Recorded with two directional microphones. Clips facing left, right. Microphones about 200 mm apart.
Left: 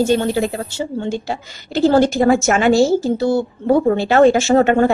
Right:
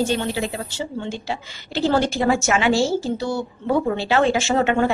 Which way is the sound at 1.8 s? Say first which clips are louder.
Left 6 dB; 45° left (ahead or behind).